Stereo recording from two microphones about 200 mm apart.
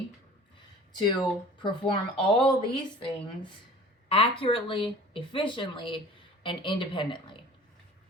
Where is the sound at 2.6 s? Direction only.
25° left (ahead or behind).